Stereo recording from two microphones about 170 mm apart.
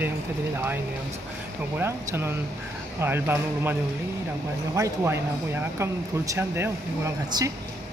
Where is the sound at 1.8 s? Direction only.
10° right (ahead or behind).